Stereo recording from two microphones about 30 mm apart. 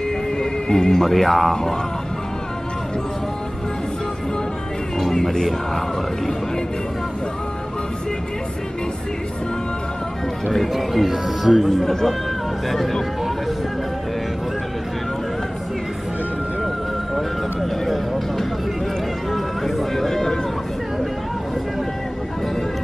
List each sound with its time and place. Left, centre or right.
0.4 s music: left
1.0 s speech: centre
5.1 s music: centre
10.5 s speech: centre
11.7 s speech: centre
12.6 s speech: centre
17.1 s vehicle: centre
19.3 s a sound: centre